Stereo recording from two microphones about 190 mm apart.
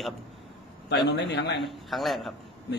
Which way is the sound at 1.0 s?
60° left (ahead or behind).